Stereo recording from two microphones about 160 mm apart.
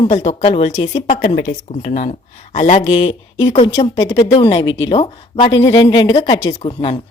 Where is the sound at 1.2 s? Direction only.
55° left (ahead or behind).